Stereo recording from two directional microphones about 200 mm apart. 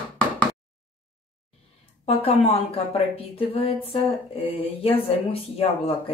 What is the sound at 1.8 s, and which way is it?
A woman's voice, 30° left (ahead or behind).